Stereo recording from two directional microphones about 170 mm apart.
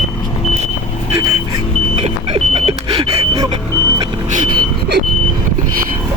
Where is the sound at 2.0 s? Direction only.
35° right (ahead or behind).